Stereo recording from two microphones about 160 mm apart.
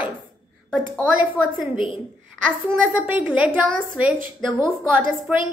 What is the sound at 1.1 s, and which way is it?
Speech, 10° right (ahead or behind).